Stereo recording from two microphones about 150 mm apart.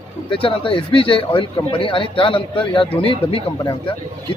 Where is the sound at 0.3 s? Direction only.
35° left (ahead or behind).